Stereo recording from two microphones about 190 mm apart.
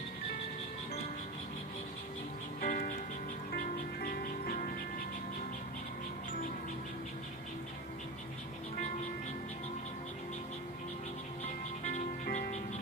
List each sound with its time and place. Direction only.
2.6 s music: 45° left (ahead or behind)
11.8 s music: 40° left (ahead or behind)